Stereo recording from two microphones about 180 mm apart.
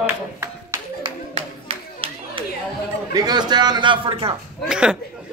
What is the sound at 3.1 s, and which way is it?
A man's voice, 20° right (ahead or behind).